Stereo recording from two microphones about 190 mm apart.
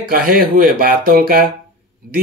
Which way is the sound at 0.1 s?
50° right (ahead or behind).